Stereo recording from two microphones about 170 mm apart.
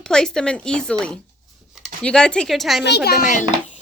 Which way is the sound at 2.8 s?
75° left (ahead or behind).